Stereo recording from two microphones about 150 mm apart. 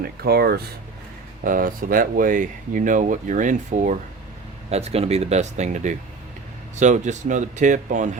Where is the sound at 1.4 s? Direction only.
65° right (ahead or behind).